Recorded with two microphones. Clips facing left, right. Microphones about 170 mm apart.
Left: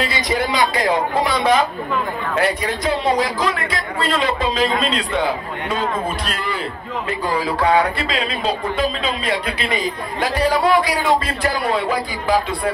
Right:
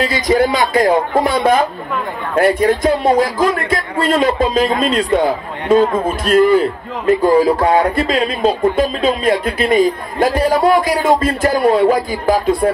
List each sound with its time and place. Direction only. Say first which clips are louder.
0.0 s speech: right 7 dB; 45° right (ahead or behind)